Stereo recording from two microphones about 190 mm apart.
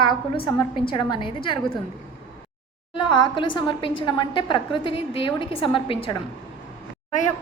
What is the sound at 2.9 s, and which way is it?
A woman's voice, 25° left (ahead or behind).